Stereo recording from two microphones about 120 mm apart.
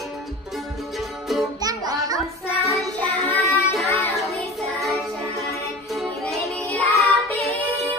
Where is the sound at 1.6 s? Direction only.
30° right (ahead or behind).